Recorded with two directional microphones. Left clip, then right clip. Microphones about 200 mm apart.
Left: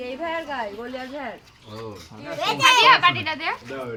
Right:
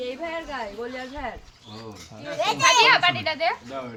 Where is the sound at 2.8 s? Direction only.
20° right (ahead or behind).